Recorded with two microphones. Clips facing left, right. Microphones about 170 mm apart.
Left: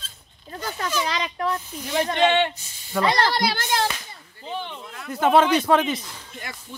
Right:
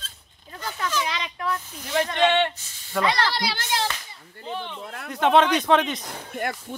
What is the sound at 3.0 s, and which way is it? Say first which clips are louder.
Speech: left 3 dB; 45° left (ahead or behind).